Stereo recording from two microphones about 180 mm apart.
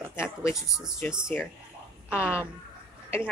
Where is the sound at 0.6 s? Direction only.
Centre (ahead or behind).